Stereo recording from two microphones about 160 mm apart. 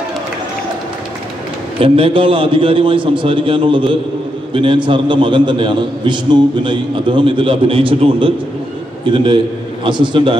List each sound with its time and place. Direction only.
1.8 s a man's voice: 35° right (ahead or behind)